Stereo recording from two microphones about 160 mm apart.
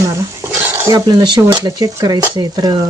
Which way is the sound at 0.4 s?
15° right (ahead or behind).